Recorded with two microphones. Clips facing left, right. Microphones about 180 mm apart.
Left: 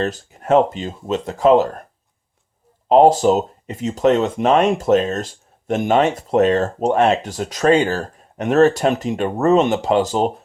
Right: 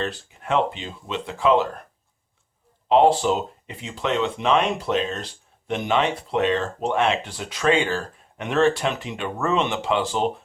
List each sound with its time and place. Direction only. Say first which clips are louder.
0.0 s speech: left 6 dB; 40° left (ahead or behind)
2.9 s speech: left 5 dB; 40° left (ahead or behind)